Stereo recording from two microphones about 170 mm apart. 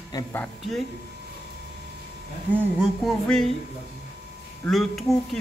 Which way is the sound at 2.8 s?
Centre (ahead or behind).